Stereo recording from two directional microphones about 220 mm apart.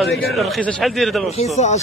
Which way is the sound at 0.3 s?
Centre (ahead or behind).